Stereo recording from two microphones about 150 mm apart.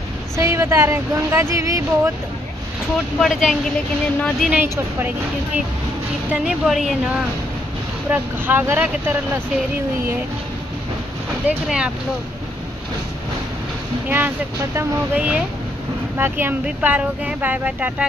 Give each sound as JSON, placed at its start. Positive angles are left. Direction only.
{"t": 0.4, "sound": "speech", "side_deg": -20}
{"t": 3.2, "sound": "a woman's voice", "side_deg": 0}
{"t": 6.4, "sound": "a woman's voice", "side_deg": 0}
{"t": 8.1, "sound": "speech", "side_deg": -15}
{"t": 11.4, "sound": "speech", "side_deg": -5}
{"t": 14.0, "sound": "speech", "side_deg": -10}